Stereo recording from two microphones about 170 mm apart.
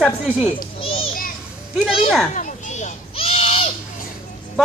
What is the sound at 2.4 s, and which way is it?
Children playing, 45° left (ahead or behind).